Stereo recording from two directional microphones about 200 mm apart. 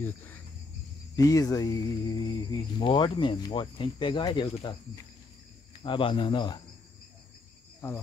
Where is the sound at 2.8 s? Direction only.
25° left (ahead or behind).